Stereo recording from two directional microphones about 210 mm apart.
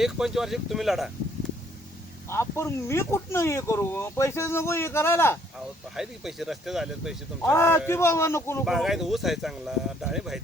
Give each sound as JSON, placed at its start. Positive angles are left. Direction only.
{"t": 0.0, "sound": "speech", "side_deg": 0}
{"t": 2.3, "sound": "speech", "side_deg": 10}
{"t": 5.9, "sound": "speech", "side_deg": 0}
{"t": 7.4, "sound": "speech", "side_deg": 10}
{"t": 8.6, "sound": "speech", "side_deg": 0}